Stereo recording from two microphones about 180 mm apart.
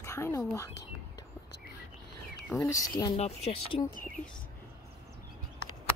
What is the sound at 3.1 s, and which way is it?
Speech, 35° left (ahead or behind).